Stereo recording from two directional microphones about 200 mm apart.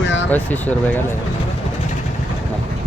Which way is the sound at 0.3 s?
10° left (ahead or behind).